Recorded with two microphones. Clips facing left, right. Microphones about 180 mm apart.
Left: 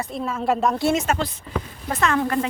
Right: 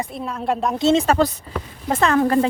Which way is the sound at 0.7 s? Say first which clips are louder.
Right 5 dB; 25° right (ahead or behind).